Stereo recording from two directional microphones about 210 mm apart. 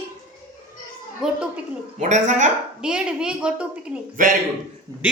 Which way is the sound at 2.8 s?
5° right (ahead or behind).